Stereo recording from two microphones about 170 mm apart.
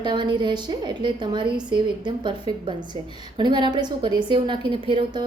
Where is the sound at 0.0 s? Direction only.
25° right (ahead or behind).